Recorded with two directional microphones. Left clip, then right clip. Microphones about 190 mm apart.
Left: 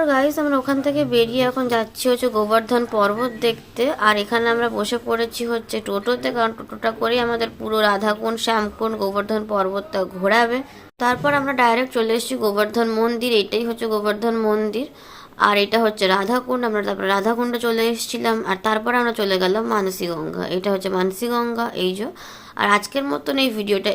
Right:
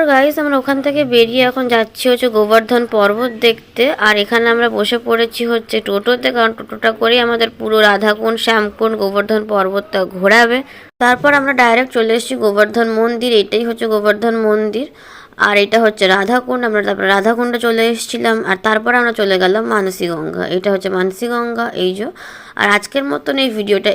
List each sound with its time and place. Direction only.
0.0 s a woman's voice: 20° right (ahead or behind)